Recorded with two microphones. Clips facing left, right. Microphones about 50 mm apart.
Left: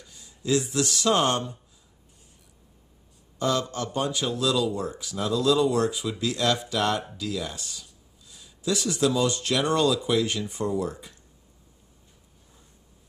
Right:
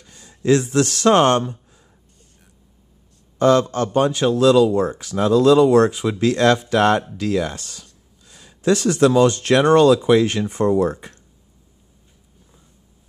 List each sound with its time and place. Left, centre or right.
0.1 s speech: right
3.3 s a man's voice: right